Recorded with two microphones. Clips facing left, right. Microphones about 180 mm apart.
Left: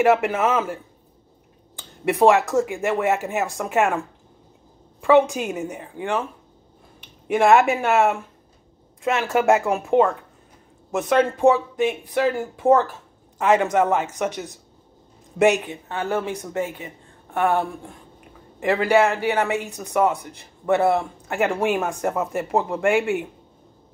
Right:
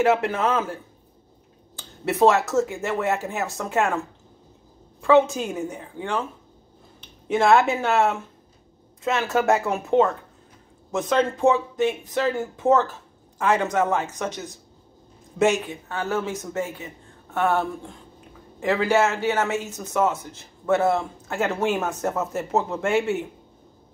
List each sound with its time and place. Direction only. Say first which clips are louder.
0.0 s speech: left 2 dB; 15° left (ahead or behind)
1.8 s a sound: left 1 dB; 15° left (ahead or behind)
2.5 s speech: left 2 dB; 15° left (ahead or behind)
5.0 s speech: left 1 dB; 15° left (ahead or behind)
15.4 s speech: left 3 dB; 15° left (ahead or behind)